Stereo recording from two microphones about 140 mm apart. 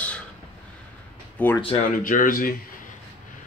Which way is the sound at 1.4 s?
10° left (ahead or behind).